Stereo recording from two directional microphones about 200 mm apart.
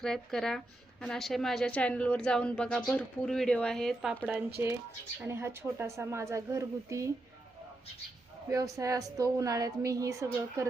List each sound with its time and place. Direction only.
0.0 s a woman's voice: centre (ahead or behind)
5.2 s speech: 10° right (ahead or behind)
8.4 s speech: 15° right (ahead or behind)